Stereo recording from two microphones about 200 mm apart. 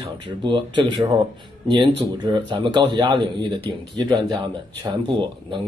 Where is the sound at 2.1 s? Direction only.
20° right (ahead or behind).